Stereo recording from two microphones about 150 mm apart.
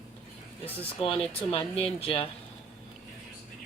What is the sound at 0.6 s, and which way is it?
Speech, 40° left (ahead or behind).